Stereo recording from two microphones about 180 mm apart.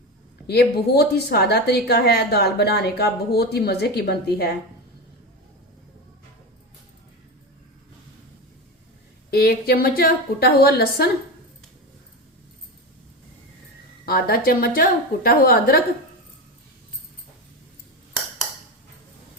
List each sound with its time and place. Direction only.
0.4 s a woman's voice: 65° left (ahead or behind)
9.3 s a woman's voice: 60° left (ahead or behind)
14.0 s a woman's voice: 60° left (ahead or behind)